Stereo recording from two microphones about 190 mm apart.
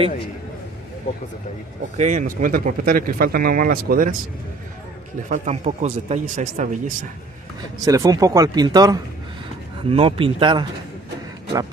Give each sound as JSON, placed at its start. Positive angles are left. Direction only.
{"t": 2.0, "sound": "speech", "side_deg": -40}
{"t": 5.3, "sound": "speech", "side_deg": -40}
{"t": 7.8, "sound": "speech", "side_deg": -20}